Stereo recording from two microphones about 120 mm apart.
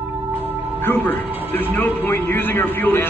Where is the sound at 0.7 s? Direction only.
15° left (ahead or behind).